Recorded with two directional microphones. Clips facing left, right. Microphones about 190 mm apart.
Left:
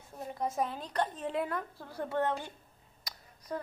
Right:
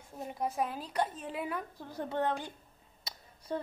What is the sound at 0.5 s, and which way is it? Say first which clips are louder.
A woman's voice: left 2 dB; 5° right (ahead or behind).